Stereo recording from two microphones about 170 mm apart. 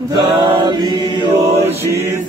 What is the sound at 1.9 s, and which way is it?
Mantra, 15° right (ahead or behind).